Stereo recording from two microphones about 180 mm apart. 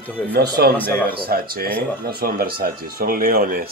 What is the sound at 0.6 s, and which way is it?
Speech, 65° right (ahead or behind).